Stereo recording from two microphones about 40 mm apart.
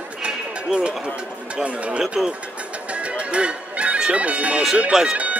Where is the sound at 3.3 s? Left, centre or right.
Right.